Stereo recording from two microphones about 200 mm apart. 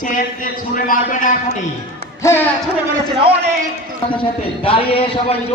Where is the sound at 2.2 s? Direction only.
10° left (ahead or behind).